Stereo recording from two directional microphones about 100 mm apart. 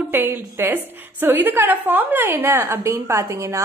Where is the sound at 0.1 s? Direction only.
20° right (ahead or behind).